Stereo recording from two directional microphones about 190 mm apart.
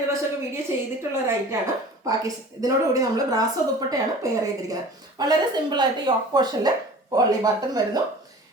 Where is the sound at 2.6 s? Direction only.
20° right (ahead or behind).